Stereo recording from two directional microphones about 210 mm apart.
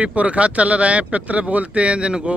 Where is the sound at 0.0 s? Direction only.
5° right (ahead or behind).